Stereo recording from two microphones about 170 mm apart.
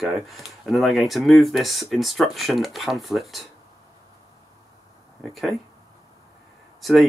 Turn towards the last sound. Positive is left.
turn(degrees=0)  # may be behind; listen again after turning